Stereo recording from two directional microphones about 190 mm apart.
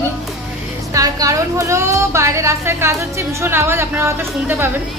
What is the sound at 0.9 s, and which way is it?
A woman's voice, 20° right (ahead or behind).